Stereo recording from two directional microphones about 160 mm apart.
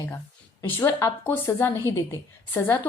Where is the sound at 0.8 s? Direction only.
15° left (ahead or behind).